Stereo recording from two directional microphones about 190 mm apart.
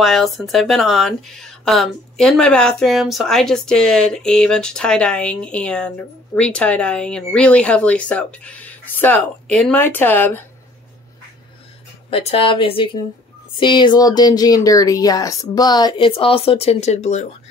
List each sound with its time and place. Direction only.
0.0 s speech: centre (ahead or behind)
12.1 s speech: 30° left (ahead or behind)